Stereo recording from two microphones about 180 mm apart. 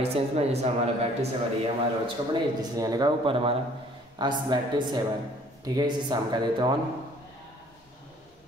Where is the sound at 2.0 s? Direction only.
25° right (ahead or behind).